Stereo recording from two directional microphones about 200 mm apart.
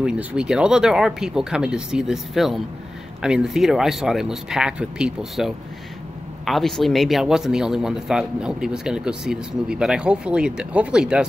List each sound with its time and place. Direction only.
0.0 s speech: 5° right (ahead or behind)